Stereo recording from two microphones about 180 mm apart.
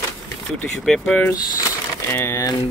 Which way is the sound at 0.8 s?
5° left (ahead or behind).